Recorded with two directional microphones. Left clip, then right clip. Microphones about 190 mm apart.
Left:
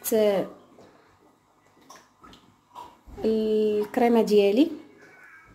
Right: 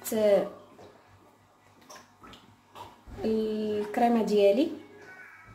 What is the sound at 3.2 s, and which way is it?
Speech, 50° left (ahead or behind).